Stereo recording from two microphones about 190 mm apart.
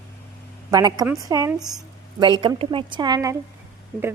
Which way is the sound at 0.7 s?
20° right (ahead or behind).